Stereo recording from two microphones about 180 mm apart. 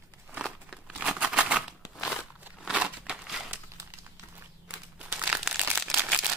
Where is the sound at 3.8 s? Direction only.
15° right (ahead or behind).